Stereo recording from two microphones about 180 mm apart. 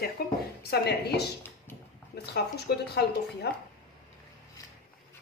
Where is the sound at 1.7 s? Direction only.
10° left (ahead or behind).